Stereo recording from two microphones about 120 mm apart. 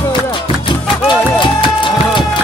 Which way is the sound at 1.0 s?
40° left (ahead or behind).